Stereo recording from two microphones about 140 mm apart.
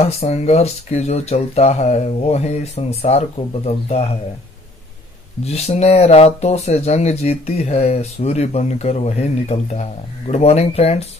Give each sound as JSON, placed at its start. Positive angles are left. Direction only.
{"t": 0.0, "sound": "speech", "side_deg": 50}
{"t": 5.4, "sound": "speech", "side_deg": 50}